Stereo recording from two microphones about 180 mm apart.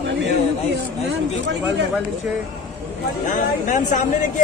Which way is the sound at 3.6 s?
45° left (ahead or behind).